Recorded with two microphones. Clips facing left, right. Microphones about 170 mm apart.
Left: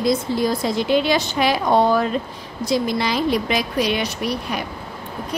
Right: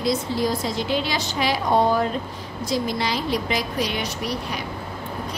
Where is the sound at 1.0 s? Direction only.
55° left (ahead or behind).